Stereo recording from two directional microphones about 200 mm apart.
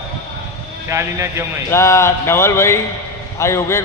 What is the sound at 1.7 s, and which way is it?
A man's voice, 15° left (ahead or behind).